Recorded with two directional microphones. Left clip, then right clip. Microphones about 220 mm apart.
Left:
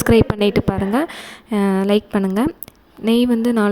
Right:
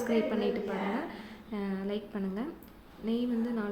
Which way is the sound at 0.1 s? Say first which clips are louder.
Left 16 dB; 50° left (ahead or behind).